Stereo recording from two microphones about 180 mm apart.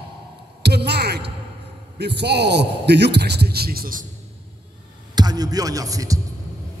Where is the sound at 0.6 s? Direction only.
65° right (ahead or behind).